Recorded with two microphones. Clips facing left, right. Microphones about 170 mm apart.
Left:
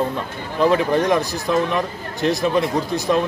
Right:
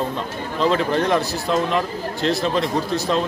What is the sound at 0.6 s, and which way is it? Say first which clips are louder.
Speech: left 2 dB; 15° left (ahead or behind).